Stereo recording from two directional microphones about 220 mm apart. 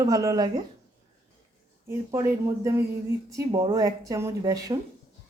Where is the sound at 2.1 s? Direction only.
15° right (ahead or behind).